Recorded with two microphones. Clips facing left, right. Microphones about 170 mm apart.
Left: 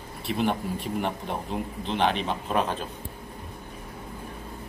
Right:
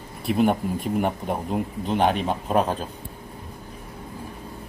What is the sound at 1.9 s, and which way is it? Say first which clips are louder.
Speech: right 4 dB; 45° right (ahead or behind).